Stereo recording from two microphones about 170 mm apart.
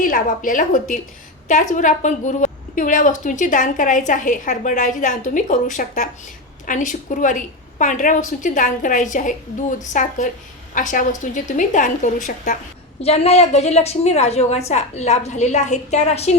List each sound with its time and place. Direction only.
0.0 s a woman's voice: 55° left (ahead or behind)
13.0 s a woman's voice: 35° left (ahead or behind)